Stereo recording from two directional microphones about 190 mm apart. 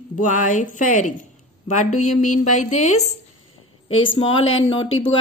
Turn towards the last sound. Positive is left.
turn(degrees=30)  # may be behind; listen again after turning